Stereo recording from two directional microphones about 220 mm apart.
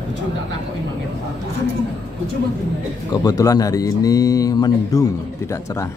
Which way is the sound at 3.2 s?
15° left (ahead or behind).